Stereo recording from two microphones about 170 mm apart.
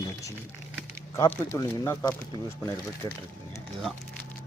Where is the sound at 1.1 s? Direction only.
15° left (ahead or behind).